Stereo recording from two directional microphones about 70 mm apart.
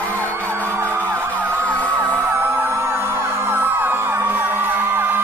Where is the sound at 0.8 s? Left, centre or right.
Right.